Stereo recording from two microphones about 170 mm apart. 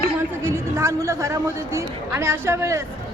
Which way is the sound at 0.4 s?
15° right (ahead or behind).